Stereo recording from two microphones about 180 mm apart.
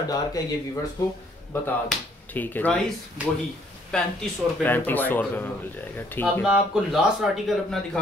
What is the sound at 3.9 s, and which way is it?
Speech, 5° left (ahead or behind).